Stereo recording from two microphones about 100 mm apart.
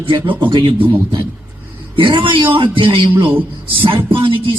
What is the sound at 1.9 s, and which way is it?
A man's voice, 55° right (ahead or behind).